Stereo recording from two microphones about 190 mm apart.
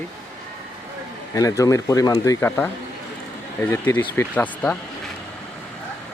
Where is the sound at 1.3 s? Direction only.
20° left (ahead or behind).